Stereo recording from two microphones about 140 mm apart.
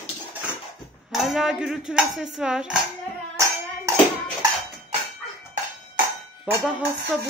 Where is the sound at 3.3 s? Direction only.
20° right (ahead or behind).